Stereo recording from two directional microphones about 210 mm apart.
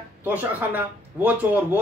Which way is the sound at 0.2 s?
10° right (ahead or behind).